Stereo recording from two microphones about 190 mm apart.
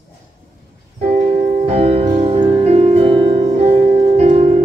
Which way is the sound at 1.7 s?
35° right (ahead or behind).